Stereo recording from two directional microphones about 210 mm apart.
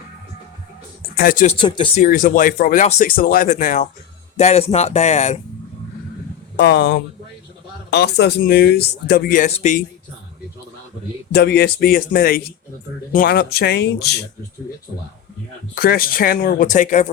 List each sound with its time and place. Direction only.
1.1 s speech: 45° left (ahead or behind)
1.5 s speech: 25° left (ahead or behind)
2.0 s speech: 40° left (ahead or behind)
6.6 s speech: 55° left (ahead or behind); by 9.8 s 30° left (ahead or behind)
11.3 s speech: 50° left (ahead or behind)
15.7 s speech: 45° left (ahead or behind)